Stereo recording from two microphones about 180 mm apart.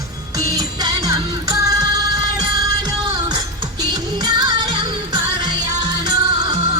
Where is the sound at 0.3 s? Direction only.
20° right (ahead or behind).